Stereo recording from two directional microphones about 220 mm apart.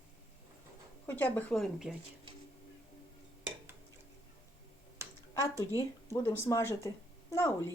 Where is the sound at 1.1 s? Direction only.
10° left (ahead or behind).